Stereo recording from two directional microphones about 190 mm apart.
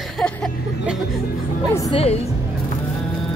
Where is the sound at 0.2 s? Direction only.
5° left (ahead or behind).